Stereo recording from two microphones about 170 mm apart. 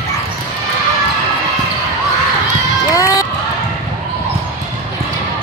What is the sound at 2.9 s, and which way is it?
Run, 20° left (ahead or behind).